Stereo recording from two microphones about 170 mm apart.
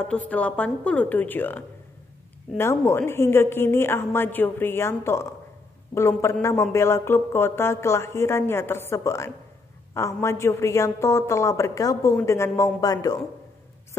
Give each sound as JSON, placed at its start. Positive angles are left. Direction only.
{"t": 0.0, "sound": "speech", "side_deg": 5}